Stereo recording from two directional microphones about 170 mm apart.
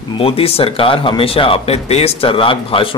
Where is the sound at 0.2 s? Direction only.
35° left (ahead or behind).